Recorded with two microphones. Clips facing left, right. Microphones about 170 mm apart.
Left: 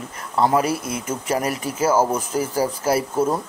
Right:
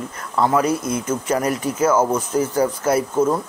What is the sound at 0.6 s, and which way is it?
Speech, 10° left (ahead or behind).